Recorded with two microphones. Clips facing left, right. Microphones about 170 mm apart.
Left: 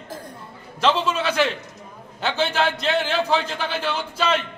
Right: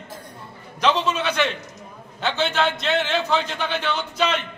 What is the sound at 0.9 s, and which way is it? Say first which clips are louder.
A man's voice: left 1 dB; 5° left (ahead or behind).